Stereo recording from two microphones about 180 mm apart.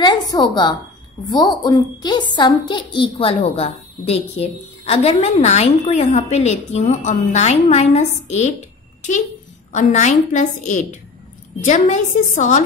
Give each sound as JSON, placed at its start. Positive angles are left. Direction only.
{"t": 0.0, "sound": "a woman's voice", "side_deg": 25}
{"t": 9.7, "sound": "a woman's voice", "side_deg": 40}